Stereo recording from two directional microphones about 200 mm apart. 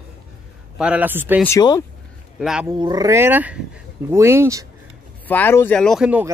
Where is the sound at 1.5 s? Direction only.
20° left (ahead or behind).